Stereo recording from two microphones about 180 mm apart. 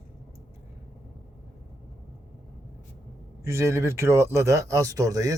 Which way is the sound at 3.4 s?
15° right (ahead or behind).